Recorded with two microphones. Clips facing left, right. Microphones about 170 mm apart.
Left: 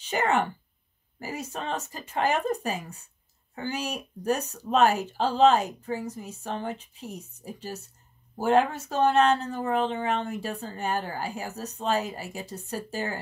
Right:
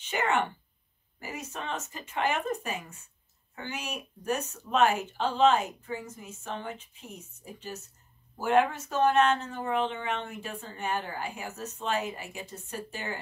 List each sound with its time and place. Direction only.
0.0 s speech: 35° left (ahead or behind)